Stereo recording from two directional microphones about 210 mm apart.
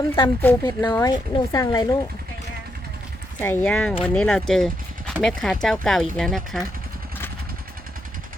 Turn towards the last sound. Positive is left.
turn(degrees=0)  # may be behind; listen again after turning